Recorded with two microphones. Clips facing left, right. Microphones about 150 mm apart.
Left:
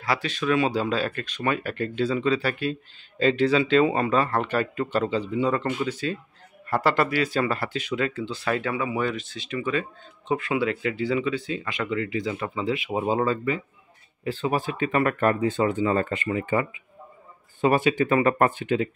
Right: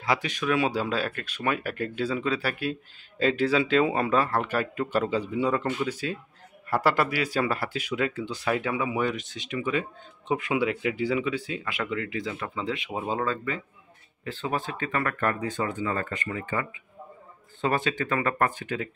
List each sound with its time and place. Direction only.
0.0 s speech: 15° right (ahead or behind); by 18.9 s 20° left (ahead or behind)